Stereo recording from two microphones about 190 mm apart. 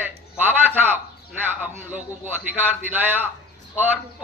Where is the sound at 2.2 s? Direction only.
10° right (ahead or behind).